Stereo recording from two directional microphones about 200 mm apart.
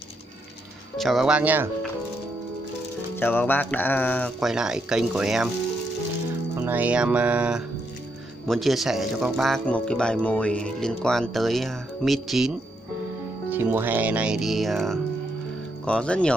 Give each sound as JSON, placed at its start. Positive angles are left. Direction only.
{"t": 0.9, "sound": "speech", "side_deg": 0}
{"t": 3.2, "sound": "speech", "side_deg": 10}
{"t": 4.4, "sound": "speech", "side_deg": -5}
{"t": 6.6, "sound": "speech", "side_deg": -10}